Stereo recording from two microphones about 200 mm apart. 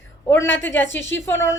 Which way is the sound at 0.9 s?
65° left (ahead or behind).